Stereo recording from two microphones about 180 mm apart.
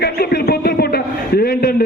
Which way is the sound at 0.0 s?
60° left (ahead or behind).